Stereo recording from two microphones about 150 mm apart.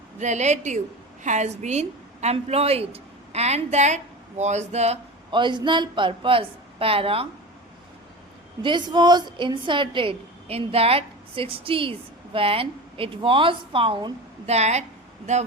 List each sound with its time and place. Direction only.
0.2 s a woman's voice: 50° right (ahead or behind)
5.3 s a woman's voice: 30° right (ahead or behind)
8.6 s a woman's voice: 30° right (ahead or behind)
14.4 s a woman's voice: 45° right (ahead or behind)